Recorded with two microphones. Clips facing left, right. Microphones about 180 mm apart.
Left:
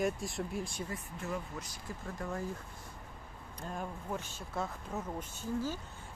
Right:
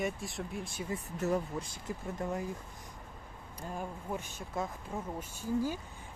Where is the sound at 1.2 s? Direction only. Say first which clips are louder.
Right 8 dB; 40° right (ahead or behind).